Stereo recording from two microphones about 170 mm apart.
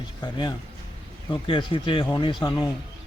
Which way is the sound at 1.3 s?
30° left (ahead or behind).